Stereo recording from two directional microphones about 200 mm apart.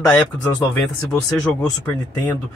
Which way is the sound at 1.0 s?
5° left (ahead or behind).